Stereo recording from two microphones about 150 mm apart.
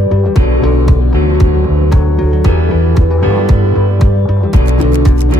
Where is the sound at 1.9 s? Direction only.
Centre (ahead or behind).